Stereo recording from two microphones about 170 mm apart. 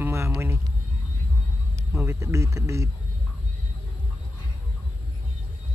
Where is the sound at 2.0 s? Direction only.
15° right (ahead or behind).